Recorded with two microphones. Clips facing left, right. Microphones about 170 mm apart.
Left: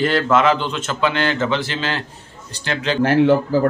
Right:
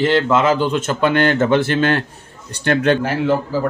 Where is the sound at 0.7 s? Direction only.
50° right (ahead or behind).